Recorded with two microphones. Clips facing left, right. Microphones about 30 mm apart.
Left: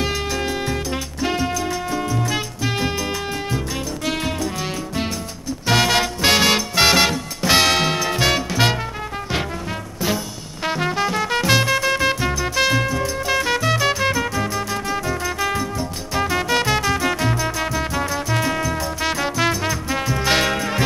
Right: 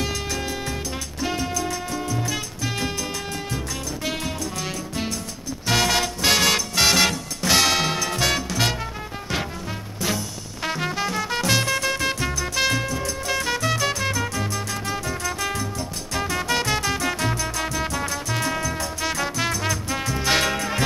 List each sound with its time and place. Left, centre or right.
0.0 s music: left
4.1 s music: left
5.7 s swing music: centre
10.0 s music: centre